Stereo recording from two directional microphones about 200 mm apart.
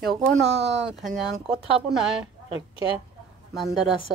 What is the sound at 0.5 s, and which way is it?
Speech, 60° right (ahead or behind).